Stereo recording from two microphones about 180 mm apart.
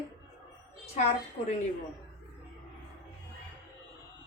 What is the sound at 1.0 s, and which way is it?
Speech, 40° left (ahead or behind).